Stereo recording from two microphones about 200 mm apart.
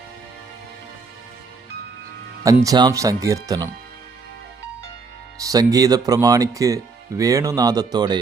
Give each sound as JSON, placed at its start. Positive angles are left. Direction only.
{"t": 2.6, "sound": "speech", "side_deg": -20}
{"t": 5.4, "sound": "speech", "side_deg": -20}